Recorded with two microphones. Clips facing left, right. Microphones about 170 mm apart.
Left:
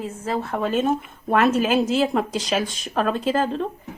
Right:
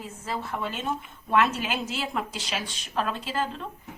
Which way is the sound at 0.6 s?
50° left (ahead or behind).